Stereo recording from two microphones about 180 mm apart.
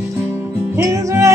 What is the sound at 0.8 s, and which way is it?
Music, 15° right (ahead or behind).